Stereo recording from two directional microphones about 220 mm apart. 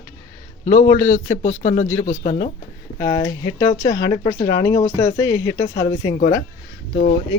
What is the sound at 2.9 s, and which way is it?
Speech, 15° left (ahead or behind).